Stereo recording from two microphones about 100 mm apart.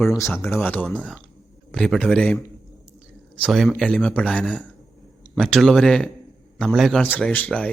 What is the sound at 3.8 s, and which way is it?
Speech, 10° left (ahead or behind).